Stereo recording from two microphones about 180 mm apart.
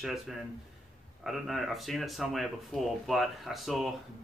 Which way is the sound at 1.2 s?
Centre (ahead or behind).